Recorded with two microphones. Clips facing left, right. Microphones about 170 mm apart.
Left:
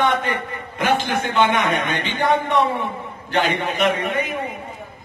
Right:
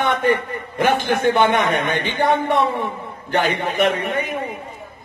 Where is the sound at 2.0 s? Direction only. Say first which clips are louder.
Right 1 dB; 50° right (ahead or behind).